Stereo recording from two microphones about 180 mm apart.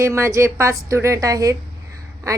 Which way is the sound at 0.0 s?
15° right (ahead or behind).